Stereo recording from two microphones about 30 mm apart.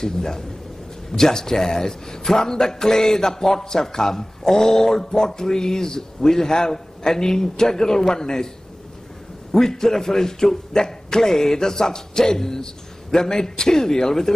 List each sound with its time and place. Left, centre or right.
0.0 s a man's voice: centre
9.5 s a man's voice: centre